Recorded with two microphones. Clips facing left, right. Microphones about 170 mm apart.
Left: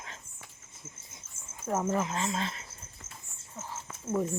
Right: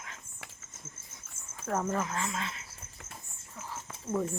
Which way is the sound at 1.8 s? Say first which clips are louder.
Left 2 dB; 20° left (ahead or behind).